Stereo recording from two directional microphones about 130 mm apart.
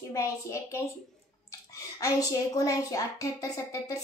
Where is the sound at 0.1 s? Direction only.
20° left (ahead or behind).